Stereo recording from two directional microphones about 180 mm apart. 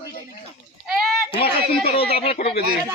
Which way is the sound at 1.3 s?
30° left (ahead or behind).